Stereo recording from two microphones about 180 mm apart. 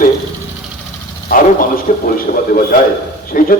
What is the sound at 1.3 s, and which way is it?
A man's voice, 50° left (ahead or behind).